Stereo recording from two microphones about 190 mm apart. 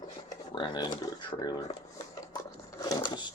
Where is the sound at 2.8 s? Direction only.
20° left (ahead or behind).